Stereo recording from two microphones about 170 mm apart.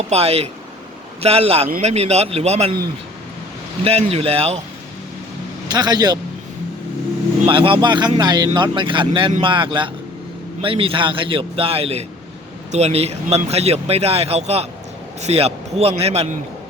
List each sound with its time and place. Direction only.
0.1 s speech: 35° right (ahead or behind)
3.8 s speech: 35° right (ahead or behind)
5.6 s speech: 25° right (ahead or behind)
7.4 s speech: 30° right (ahead or behind)